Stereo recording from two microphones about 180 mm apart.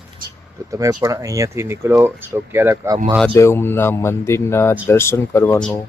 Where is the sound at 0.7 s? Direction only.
20° right (ahead or behind).